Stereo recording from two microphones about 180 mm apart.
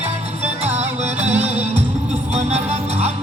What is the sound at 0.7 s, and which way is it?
Music, 40° right (ahead or behind).